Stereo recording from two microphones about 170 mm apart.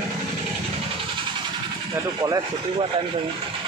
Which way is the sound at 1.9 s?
25° right (ahead or behind).